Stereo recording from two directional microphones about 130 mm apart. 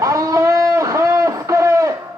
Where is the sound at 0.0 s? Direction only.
25° right (ahead or behind).